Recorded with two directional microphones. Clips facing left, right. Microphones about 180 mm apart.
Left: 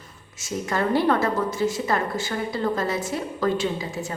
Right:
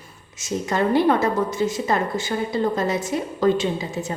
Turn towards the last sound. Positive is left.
turn(degrees=-20)  # may be behind; listen again after turning